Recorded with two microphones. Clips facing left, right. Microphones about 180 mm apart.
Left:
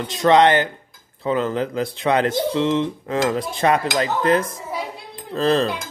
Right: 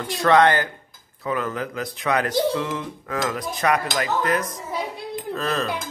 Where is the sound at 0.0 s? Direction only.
20° left (ahead or behind).